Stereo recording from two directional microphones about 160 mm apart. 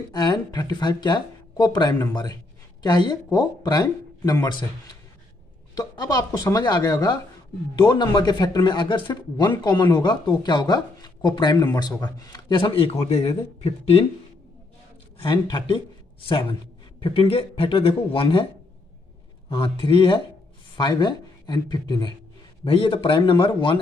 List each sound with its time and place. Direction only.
0.1 s speech: 25° left (ahead or behind)
15.1 s speech: 30° left (ahead or behind)
19.5 s speech: 30° left (ahead or behind)